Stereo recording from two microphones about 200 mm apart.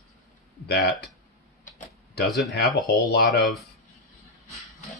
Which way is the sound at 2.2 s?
Centre (ahead or behind).